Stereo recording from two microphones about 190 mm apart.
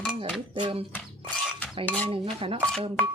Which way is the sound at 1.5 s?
5° left (ahead or behind).